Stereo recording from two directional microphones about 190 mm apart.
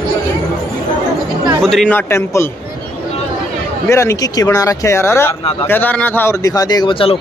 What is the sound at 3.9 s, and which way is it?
Speech, 15° left (ahead or behind).